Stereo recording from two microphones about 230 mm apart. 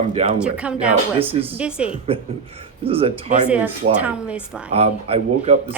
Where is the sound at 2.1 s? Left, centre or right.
Right.